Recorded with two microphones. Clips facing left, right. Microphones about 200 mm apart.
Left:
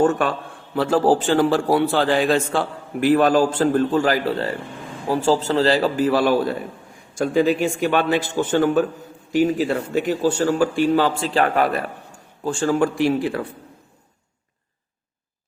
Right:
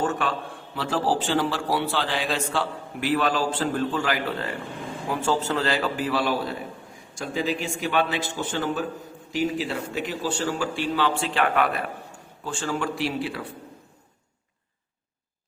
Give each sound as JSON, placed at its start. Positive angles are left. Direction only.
{"t": 0.8, "sound": "a man's voice", "side_deg": 50}